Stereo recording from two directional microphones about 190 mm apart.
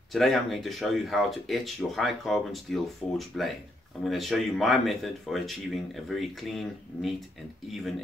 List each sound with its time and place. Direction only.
0.1 s speech: centre (ahead or behind)